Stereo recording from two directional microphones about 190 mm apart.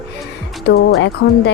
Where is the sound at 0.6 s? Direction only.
60° left (ahead or behind).